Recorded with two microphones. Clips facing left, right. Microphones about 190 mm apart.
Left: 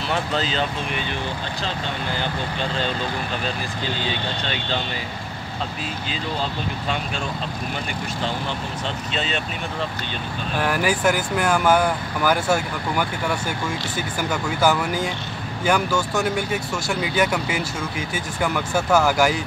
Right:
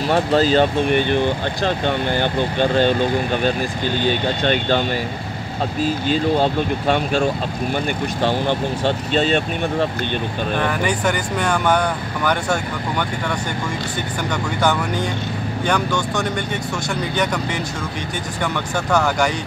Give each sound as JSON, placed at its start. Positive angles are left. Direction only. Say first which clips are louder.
{"t": 0.1, "sound": "speech", "louder": "right 9 dB", "side_deg": -40}
{"t": 6.3, "sound": "speech", "louder": "right 9 dB", "side_deg": -55}
{"t": 10.6, "sound": "speech", "louder": "left 2 dB", "side_deg": 5}
{"t": 14.3, "sound": "speech", "louder": "even", "side_deg": 5}